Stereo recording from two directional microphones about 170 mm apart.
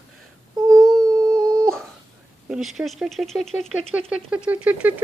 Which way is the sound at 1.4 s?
20° right (ahead or behind).